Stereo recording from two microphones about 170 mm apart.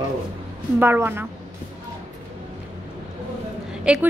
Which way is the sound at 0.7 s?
10° right (ahead or behind).